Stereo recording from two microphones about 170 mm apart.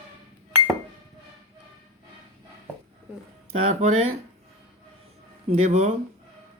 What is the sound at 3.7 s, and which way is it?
Speech, 40° right (ahead or behind).